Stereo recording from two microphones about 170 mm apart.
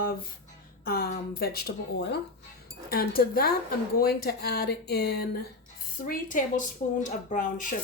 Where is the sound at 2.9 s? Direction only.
60° left (ahead or behind).